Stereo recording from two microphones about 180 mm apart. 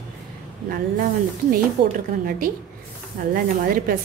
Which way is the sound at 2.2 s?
55° right (ahead or behind).